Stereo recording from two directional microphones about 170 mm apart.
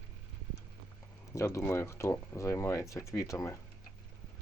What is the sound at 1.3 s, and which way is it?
Speech, 15° left (ahead or behind).